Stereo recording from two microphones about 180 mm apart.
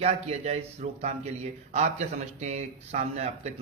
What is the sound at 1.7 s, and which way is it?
Speech, 40° right (ahead or behind).